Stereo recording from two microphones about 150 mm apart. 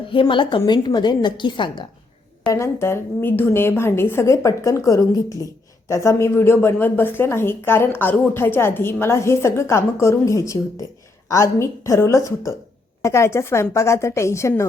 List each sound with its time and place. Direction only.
0.1 s a woman's voice: 35° left (ahead or behind)
2.5 s a woman's voice: 20° left (ahead or behind)